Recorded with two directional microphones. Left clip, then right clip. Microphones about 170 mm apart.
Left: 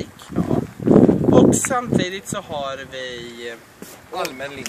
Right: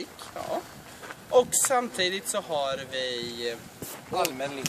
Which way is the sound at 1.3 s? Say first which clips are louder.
Left 1 dB; 10° right (ahead or behind).